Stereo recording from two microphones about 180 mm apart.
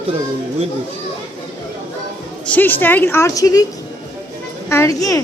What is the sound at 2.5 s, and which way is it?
A woman's voice, 10° left (ahead or behind).